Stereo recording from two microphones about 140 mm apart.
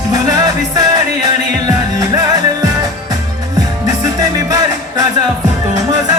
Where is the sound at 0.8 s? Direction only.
25° right (ahead or behind).